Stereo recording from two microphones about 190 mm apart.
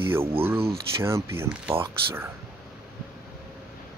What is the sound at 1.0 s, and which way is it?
Speech, 15° right (ahead or behind).